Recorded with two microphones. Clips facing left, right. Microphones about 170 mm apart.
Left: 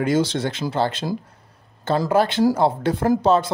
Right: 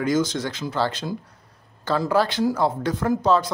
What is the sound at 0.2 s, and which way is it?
Speech, 25° left (ahead or behind).